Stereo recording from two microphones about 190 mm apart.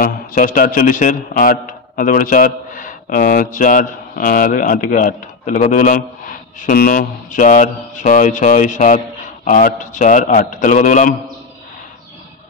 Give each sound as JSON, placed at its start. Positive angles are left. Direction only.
{"t": 0.0, "sound": "a man's voice", "side_deg": 50}